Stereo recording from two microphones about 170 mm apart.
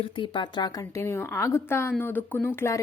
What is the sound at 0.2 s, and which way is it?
A woman's voice, 25° left (ahead or behind).